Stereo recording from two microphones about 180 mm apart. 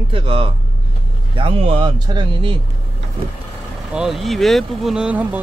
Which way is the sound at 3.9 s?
Centre (ahead or behind).